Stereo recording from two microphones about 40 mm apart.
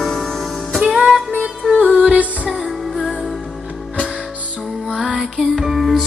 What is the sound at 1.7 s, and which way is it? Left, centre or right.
Music, centre.